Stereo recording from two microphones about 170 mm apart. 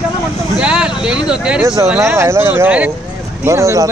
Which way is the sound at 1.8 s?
15° right (ahead or behind).